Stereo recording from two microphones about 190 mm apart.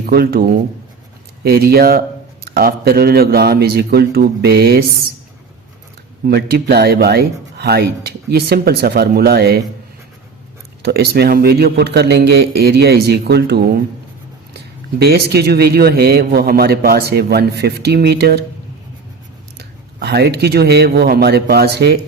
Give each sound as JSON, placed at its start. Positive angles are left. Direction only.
{"t": 0.0, "sound": "a man's voice", "side_deg": -55}
{"t": 6.2, "sound": "speech", "side_deg": -55}
{"t": 10.8, "sound": "speech", "side_deg": -55}
{"t": 19.5, "sound": "speech", "side_deg": -60}